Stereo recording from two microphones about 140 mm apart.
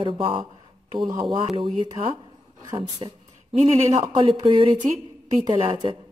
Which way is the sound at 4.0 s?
35° right (ahead or behind).